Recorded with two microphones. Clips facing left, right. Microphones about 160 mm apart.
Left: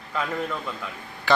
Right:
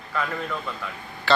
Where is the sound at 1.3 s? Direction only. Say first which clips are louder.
Even; 15° left (ahead or behind).